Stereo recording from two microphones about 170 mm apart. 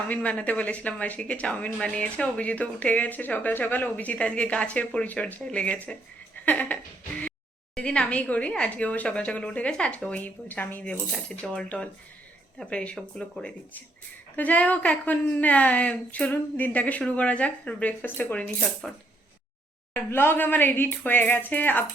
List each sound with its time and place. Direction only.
0.1 s speech: 10° left (ahead or behind)
6.4 s a sound: 10° left (ahead or behind)
7.8 s speech: 5° left (ahead or behind)